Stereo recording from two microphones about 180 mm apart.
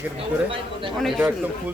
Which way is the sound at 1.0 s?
Centre (ahead or behind).